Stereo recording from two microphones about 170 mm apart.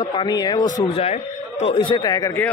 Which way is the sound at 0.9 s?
40° left (ahead or behind).